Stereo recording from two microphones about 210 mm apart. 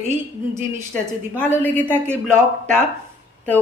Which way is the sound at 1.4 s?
10° left (ahead or behind).